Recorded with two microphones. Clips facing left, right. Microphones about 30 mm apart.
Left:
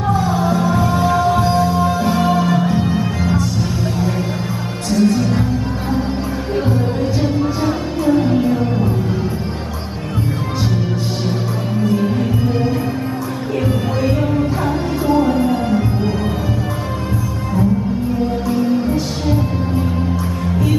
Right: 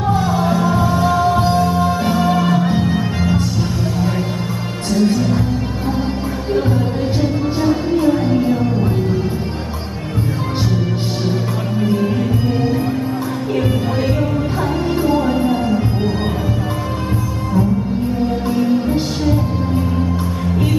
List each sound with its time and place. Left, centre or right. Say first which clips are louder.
0.4 s music: even; centre
2.1 s music: even; centre
4.9 s music: left 1 dB; right
7.6 s music: right 3 dB; centre
12.0 s music: even; centre
15.2 s music: even; centre